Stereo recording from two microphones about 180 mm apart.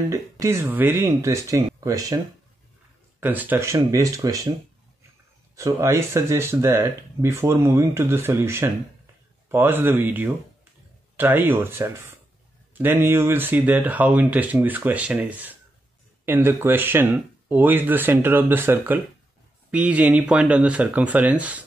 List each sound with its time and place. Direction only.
0.1 s speech: 15° right (ahead or behind)
3.2 s speech: 10° right (ahead or behind)
5.6 s speech: 15° right (ahead or behind)